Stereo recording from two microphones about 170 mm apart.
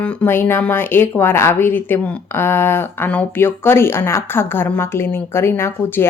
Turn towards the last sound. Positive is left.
turn(degrees=15)  # may be behind; listen again after turning